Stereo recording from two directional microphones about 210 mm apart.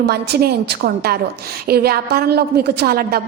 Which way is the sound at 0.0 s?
50° right (ahead or behind).